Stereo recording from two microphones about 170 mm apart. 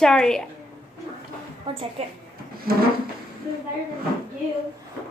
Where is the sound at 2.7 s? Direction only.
60° right (ahead or behind).